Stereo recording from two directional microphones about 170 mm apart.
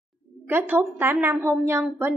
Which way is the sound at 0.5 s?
10° right (ahead or behind).